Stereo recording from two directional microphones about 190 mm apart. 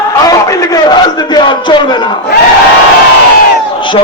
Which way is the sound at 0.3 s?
15° left (ahead or behind).